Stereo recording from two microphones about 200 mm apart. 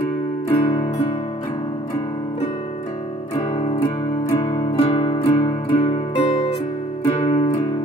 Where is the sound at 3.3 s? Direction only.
20° left (ahead or behind).